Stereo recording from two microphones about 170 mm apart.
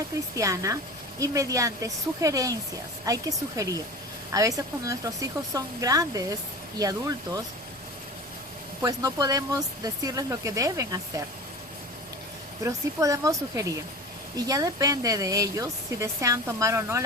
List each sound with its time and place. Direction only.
0.3 s speech: 20° right (ahead or behind)
8.8 s speech: 20° right (ahead or behind)
12.6 s speech: 20° right (ahead or behind)